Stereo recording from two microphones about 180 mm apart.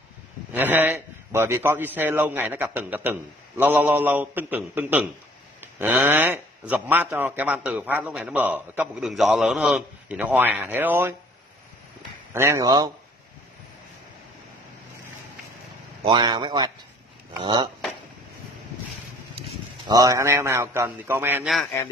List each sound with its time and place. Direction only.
0.5 s a man's voice: 10° right (ahead or behind)
12.4 s a man's voice: 15° right (ahead or behind)
16.0 s a man's voice: 25° right (ahead or behind)
19.9 s a man's voice: 20° right (ahead or behind)